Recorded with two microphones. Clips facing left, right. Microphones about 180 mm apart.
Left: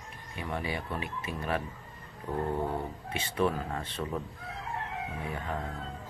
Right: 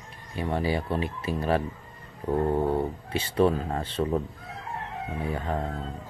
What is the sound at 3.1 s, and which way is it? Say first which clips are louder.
Speech: right 6 dB; 35° right (ahead or behind).